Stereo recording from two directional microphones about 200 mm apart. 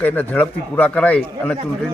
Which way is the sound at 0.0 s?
10° left (ahead or behind).